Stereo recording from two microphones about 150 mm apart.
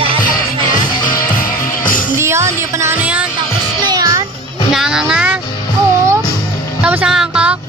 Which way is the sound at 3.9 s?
25° right (ahead or behind).